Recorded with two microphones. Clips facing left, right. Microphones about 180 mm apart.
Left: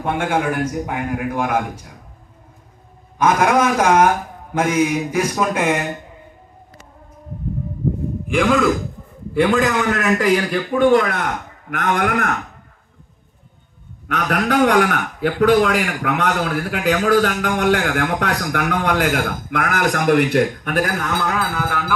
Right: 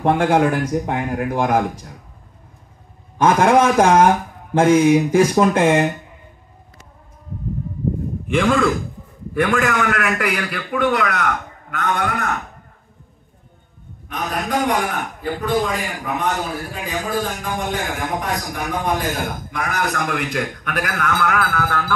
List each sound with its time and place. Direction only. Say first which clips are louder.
0.0 s a man's voice: right 4 dB; 35° right (ahead or behind)
3.2 s a man's voice: right 2 dB; 30° right (ahead or behind)
8.3 s speech: left 1 dB; centre (ahead or behind)
9.3 s a man's voice: left 2 dB; 20° left (ahead or behind)
11.7 s a man's voice: left 3 dB; 60° left (ahead or behind)
14.0 s a man's voice: left 5 dB; 75° left (ahead or behind)
20.3 s a man's voice: left 6 dB; 40° left (ahead or behind)
21.1 s music: right 1 dB; 20° left (ahead or behind)